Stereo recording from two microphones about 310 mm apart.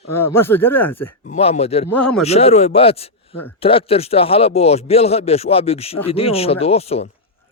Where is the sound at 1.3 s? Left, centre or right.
Centre.